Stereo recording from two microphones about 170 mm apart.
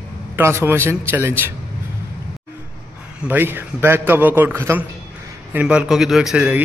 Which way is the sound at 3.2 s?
10° right (ahead or behind).